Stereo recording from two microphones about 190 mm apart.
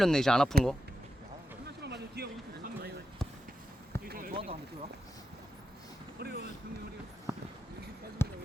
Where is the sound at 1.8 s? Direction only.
60° right (ahead or behind).